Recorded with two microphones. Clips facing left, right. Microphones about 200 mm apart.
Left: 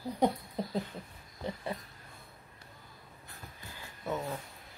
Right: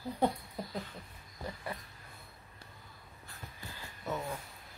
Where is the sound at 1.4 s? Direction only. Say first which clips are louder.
Left 4 dB; 25° left (ahead or behind).